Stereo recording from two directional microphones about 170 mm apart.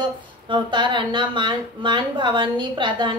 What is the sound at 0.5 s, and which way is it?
A woman's voice, 30° right (ahead or behind).